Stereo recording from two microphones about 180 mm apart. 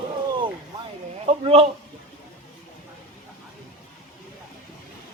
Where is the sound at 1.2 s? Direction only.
35° right (ahead or behind).